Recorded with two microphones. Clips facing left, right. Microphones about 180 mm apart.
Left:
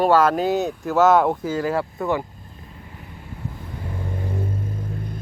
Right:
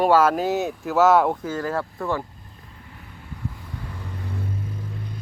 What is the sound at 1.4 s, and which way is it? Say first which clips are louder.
Speech: left 3 dB; 10° left (ahead or behind).